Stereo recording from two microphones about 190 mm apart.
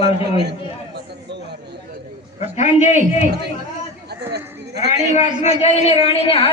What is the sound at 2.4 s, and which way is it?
Speech, 40° left (ahead or behind).